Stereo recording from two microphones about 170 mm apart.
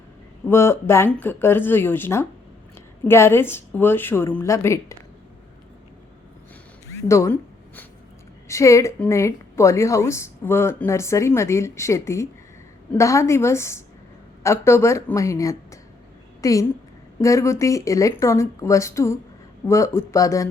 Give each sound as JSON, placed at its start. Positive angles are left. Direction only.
{"t": 0.4, "sound": "speech", "side_deg": 15}
{"t": 6.9, "sound": "speech", "side_deg": 15}
{"t": 8.4, "sound": "a woman's voice", "side_deg": 15}